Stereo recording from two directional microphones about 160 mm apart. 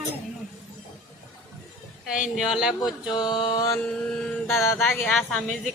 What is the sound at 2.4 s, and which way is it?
Speech, 5° right (ahead or behind).